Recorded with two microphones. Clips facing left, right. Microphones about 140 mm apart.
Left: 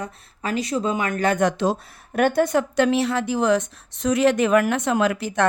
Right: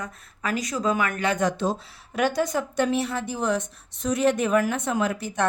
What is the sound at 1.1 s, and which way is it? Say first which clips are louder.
Speech: left 4 dB; 45° left (ahead or behind).